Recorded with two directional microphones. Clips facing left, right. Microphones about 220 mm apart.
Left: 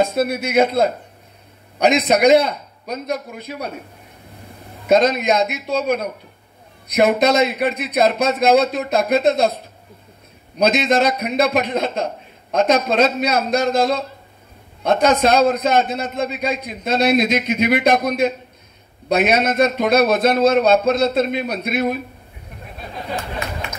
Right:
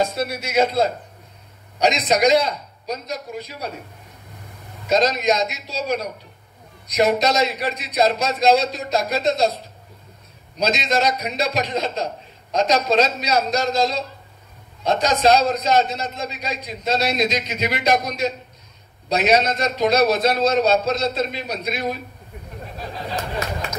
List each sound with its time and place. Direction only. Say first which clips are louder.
0.0 s a man's voice: left 5 dB; 55° left (ahead or behind)
4.8 s a man's voice: left 3 dB; 55° left (ahead or behind)
10.6 s a man's voice: left 5 dB; 55° left (ahead or behind)